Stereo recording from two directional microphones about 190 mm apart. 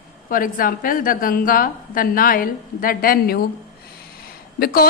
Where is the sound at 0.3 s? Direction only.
45° left (ahead or behind).